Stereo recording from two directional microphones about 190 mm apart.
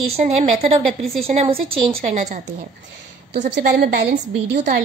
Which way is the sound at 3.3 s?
50° right (ahead or behind).